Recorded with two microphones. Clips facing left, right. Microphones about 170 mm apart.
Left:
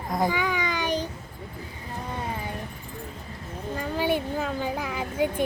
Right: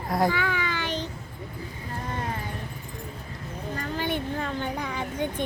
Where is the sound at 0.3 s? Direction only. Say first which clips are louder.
Left 1 dB; 15° left (ahead or behind).